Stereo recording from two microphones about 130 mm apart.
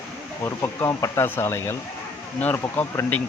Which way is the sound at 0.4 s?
20° left (ahead or behind).